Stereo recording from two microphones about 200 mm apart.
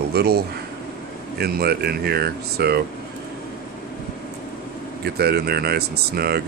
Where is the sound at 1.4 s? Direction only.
50° right (ahead or behind).